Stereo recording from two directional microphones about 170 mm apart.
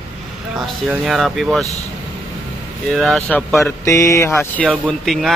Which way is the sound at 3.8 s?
20° left (ahead or behind).